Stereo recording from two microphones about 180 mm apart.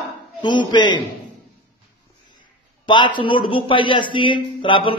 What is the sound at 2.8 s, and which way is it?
A man's voice, 25° left (ahead or behind).